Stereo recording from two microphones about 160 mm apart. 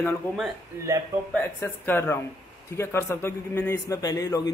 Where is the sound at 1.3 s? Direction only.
10° left (ahead or behind).